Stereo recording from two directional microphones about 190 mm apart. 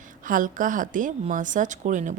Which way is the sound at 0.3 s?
45° right (ahead or behind).